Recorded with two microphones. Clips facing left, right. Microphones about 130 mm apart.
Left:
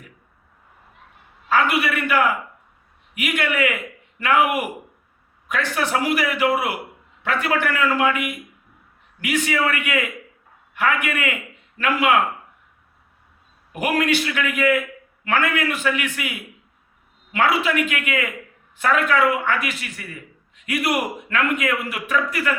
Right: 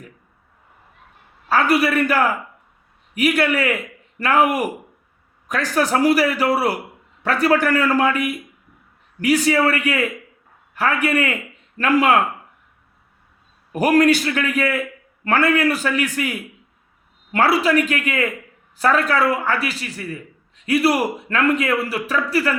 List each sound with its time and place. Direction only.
1.5 s a man's voice: 35° right (ahead or behind)
13.7 s a man's voice: 40° right (ahead or behind)